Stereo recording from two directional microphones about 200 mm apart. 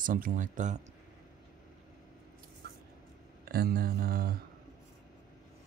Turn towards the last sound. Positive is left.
turn(degrees=-45)  # may be behind; listen again after turning